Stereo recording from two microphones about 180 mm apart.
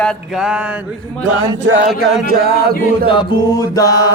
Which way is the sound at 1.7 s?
80° right.